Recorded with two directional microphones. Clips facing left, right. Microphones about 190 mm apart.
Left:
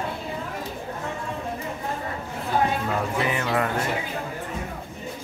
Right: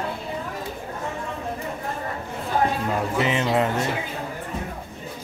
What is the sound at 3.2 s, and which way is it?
Music, 20° right (ahead or behind).